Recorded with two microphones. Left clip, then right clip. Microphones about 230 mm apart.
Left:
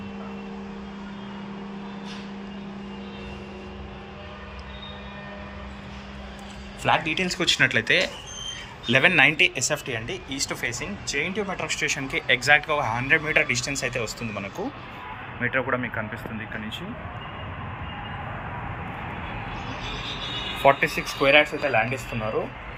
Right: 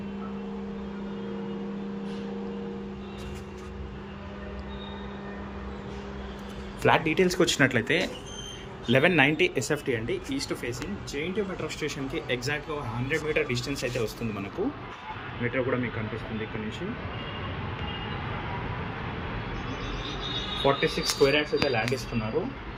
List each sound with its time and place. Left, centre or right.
6.8 s a man's voice: centre
15.5 s a man's voice: centre
20.7 s a man's voice: centre